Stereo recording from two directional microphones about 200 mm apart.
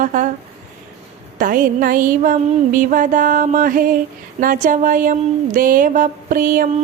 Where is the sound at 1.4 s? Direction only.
45° right (ahead or behind).